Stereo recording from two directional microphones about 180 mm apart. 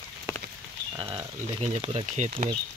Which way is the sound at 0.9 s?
30° right (ahead or behind).